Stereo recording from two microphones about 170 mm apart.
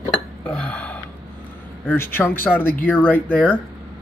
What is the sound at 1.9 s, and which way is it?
Speech, 15° left (ahead or behind).